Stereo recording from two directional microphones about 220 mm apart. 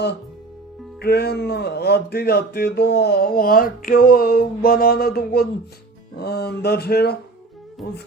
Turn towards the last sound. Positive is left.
turn(degrees=45)  # may be behind; listen again after turning